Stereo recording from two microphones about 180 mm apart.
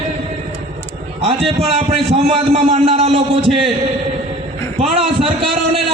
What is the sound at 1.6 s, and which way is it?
A man's voice, 35° right (ahead or behind).